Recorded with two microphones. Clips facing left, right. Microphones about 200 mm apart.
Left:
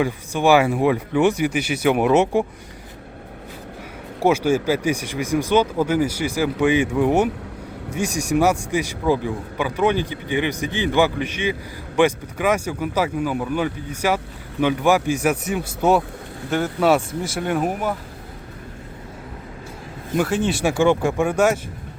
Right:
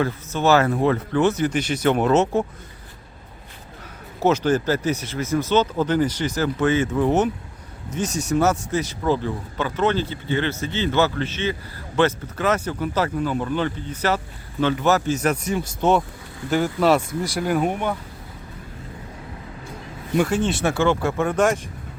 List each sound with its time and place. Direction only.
0.0 s a man's voice: 10° left (ahead or behind)
4.2 s a man's voice: 10° left (ahead or behind)
20.1 s a man's voice: 5° left (ahead or behind)